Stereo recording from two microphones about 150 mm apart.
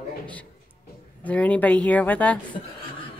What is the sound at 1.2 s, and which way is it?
Speech, 10° left (ahead or behind).